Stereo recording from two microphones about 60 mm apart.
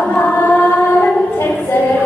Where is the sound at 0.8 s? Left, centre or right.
Left.